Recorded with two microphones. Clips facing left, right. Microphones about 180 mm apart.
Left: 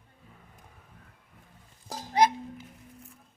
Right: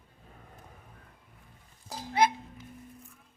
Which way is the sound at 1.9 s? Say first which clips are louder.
Left 2 dB; 40° left (ahead or behind).